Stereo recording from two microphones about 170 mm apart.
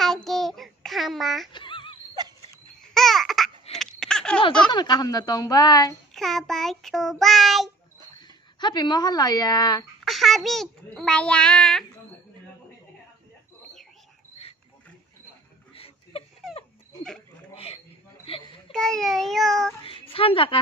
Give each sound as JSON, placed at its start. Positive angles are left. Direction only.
{"t": 0.0, "sound": "child singing", "side_deg": 0}
{"t": 1.5, "sound": "music", "side_deg": 30}
{"t": 2.2, "sound": "wheeze", "side_deg": -25}
{"t": 2.9, "sound": "babbling", "side_deg": 0}
{"t": 3.7, "sound": "a sound", "side_deg": 5}
{"t": 4.6, "sound": "a woman's voice", "side_deg": 25}
{"t": 6.1, "sound": "a child's voice", "side_deg": 0}
{"t": 8.2, "sound": "speech", "side_deg": 25}
{"t": 10.0, "sound": "a child's voice", "side_deg": 0}
{"t": 15.7, "sound": "a sound", "side_deg": 35}
{"t": 18.3, "sound": "a sound", "side_deg": 35}
{"t": 18.7, "sound": "a child's voice", "side_deg": 5}
{"t": 19.8, "sound": "a sound", "side_deg": 35}